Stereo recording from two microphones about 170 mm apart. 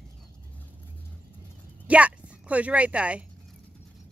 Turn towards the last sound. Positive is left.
turn(degrees=-5)  # may be behind; listen again after turning